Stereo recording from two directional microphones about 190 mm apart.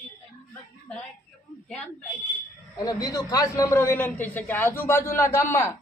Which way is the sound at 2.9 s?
20° left (ahead or behind).